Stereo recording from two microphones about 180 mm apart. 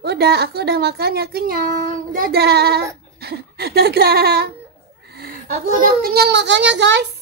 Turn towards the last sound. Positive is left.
turn(degrees=-80)